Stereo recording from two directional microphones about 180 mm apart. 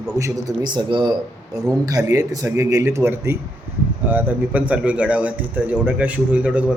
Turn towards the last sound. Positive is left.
turn(degrees=-5)  # may be behind; listen again after turning